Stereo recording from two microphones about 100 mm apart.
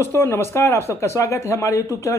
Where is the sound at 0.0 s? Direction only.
25° left (ahead or behind).